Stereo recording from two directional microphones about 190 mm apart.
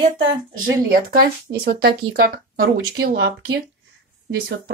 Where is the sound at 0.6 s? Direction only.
50° right (ahead or behind).